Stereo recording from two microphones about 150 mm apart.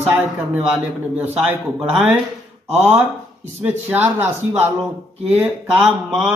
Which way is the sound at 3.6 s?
15° right (ahead or behind).